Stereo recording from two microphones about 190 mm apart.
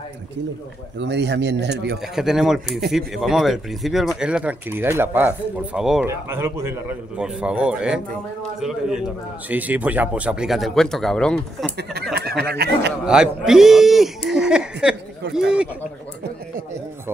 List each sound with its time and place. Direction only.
0.9 s speech: 65° right (ahead or behind)
2.1 s speech: centre (ahead or behind)
11.9 s speech: 55° right (ahead or behind)
13.0 s speech: 5° right (ahead or behind)